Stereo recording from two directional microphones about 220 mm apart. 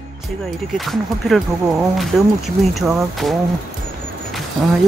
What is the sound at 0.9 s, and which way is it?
Speech, centre (ahead or behind).